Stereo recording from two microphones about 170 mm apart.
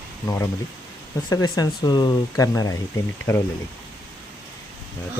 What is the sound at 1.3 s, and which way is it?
Speech, 20° left (ahead or behind).